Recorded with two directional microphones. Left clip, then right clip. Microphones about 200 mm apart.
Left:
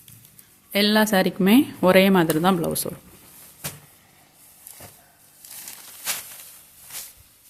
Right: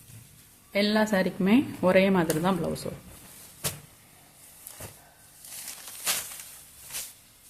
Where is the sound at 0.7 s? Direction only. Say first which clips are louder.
Left 5 dB; 40° left (ahead or behind).